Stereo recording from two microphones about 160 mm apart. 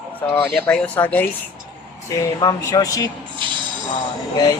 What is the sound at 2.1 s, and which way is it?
Speech, 25° left (ahead or behind).